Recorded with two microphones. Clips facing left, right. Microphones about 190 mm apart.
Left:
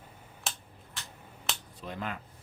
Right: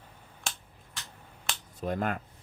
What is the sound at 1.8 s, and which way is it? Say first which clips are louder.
Speech: right 9 dB; 50° right (ahead or behind).